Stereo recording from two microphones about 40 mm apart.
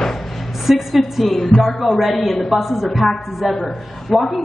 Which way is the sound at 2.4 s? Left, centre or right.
Centre.